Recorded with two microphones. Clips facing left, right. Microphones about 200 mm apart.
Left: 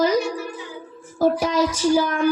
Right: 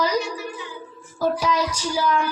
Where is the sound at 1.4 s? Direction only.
50° left (ahead or behind).